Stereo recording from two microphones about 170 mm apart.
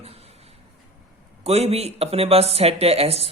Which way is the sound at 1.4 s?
40° right (ahead or behind).